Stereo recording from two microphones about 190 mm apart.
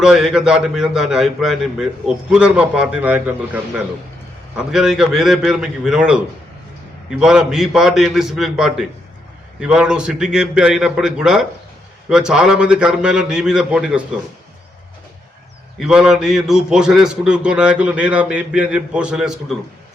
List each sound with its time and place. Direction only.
0.0 s a man's voice: 5° right (ahead or behind)
15.8 s a man's voice: 5° right (ahead or behind)